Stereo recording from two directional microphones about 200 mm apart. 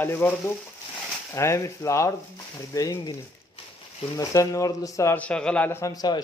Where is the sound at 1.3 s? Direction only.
15° left (ahead or behind).